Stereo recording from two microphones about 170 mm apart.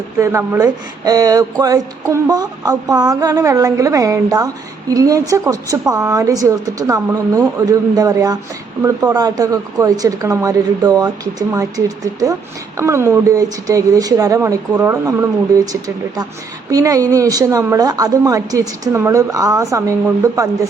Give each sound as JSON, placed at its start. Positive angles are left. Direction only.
{"t": 0.2, "sound": "speech", "side_deg": -15}